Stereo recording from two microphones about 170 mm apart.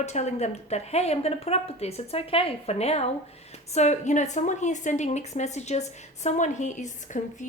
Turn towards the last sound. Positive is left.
turn(degrees=45)  # may be behind; listen again after turning